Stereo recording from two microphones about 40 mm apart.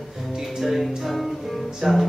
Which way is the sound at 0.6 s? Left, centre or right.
Centre.